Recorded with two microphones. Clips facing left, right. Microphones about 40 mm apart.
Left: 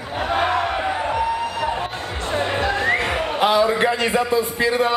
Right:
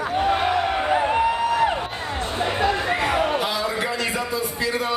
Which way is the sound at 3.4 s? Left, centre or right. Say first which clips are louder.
Left 7 dB; left.